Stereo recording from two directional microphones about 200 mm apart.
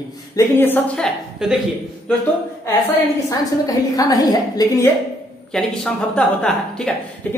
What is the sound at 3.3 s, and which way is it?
Speech, 20° left (ahead or behind).